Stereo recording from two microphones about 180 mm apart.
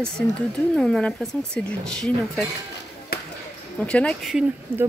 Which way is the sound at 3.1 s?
60° left (ahead or behind).